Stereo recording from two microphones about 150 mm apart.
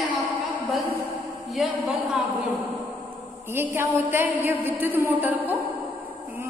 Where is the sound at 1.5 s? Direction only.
Centre (ahead or behind).